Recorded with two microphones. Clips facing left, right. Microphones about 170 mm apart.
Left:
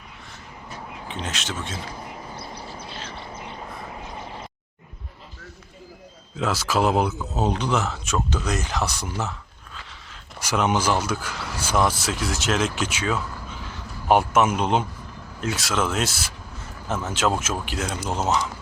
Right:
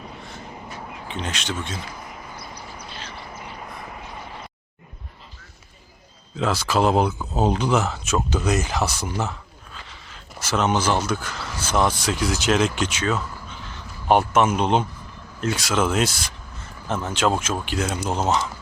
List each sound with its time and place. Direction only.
1.0 s speech: centre (ahead or behind)
1.8 s bird: 30° left (ahead or behind)
6.3 s speech: 5° left (ahead or behind)
10.4 s speech: 10° left (ahead or behind); by 18.4 s 5° right (ahead or behind)